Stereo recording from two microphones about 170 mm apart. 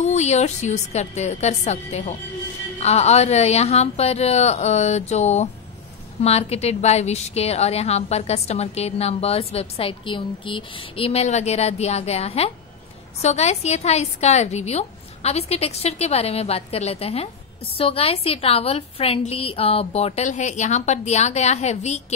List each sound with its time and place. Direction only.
0.0 s a woman's voice: 40° left (ahead or behind)